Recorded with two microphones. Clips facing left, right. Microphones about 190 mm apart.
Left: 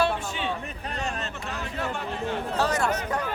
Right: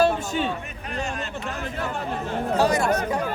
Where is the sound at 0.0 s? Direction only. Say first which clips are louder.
Right 5 dB; 45° right (ahead or behind).